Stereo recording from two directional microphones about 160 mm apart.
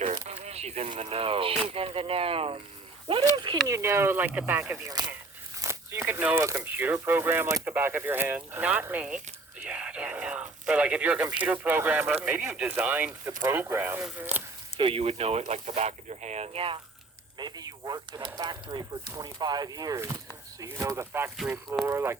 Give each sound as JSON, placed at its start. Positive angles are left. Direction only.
{"t": 0.0, "sound": "a sound", "side_deg": -40}
{"t": 1.1, "sound": "speech", "side_deg": -35}
{"t": 3.7, "sound": "speech", "side_deg": -15}
{"t": 4.9, "sound": "speech", "side_deg": -25}
{"t": 5.6, "sound": "speech", "side_deg": -15}
{"t": 9.6, "sound": "a sound", "side_deg": -5}
{"t": 11.4, "sound": "speech", "side_deg": -10}
{"t": 14.8, "sound": "speech", "side_deg": -35}
{"t": 17.3, "sound": "speech", "side_deg": -25}